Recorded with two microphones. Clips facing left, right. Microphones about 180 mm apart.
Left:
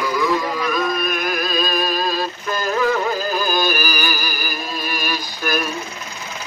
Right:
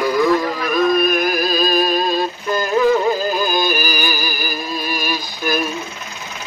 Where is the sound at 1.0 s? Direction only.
35° right (ahead or behind).